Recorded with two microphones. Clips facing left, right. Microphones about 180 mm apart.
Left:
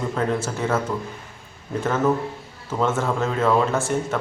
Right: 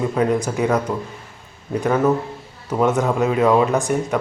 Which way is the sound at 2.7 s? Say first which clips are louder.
Right 4 dB; 15° right (ahead or behind).